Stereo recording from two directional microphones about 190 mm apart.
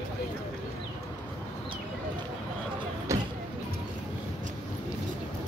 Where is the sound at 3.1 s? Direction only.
15° right (ahead or behind).